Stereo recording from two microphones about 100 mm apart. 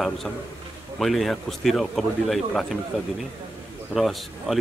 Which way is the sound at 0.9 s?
Centre (ahead or behind).